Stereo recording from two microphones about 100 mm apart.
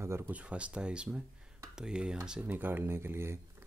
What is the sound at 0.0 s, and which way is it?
Speech, 25° right (ahead or behind).